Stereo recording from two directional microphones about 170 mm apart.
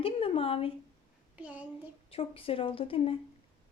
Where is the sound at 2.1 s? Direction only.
35° left (ahead or behind).